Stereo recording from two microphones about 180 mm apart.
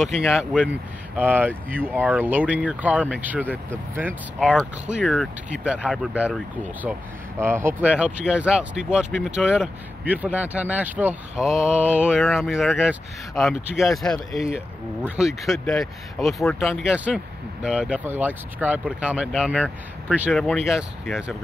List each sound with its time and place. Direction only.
0.0 s speech: 5° right (ahead or behind)